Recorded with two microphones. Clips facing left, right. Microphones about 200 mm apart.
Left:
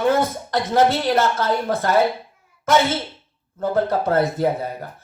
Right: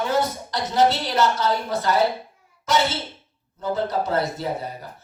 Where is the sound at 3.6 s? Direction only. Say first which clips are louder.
Left 4 dB; 55° left (ahead or behind).